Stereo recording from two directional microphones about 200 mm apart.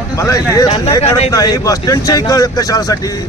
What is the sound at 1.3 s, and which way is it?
Speech, 15° left (ahead or behind).